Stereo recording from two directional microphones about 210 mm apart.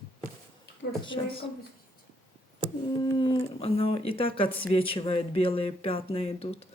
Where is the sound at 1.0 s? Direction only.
25° left (ahead or behind).